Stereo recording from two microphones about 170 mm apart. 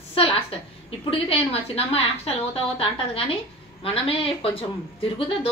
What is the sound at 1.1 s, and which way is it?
A woman's voice, 35° left (ahead or behind).